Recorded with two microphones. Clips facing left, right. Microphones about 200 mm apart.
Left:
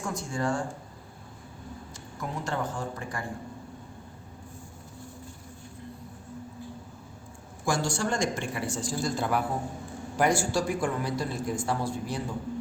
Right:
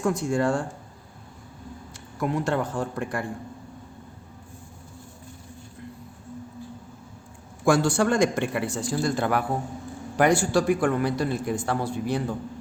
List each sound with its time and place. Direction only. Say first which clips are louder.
0.0 s a man's voice: right 7 dB; 65° right (ahead or behind)
2.2 s a man's voice: right 7 dB; 60° right (ahead or behind)
7.6 s a man's voice: right 8 dB; 60° right (ahead or behind)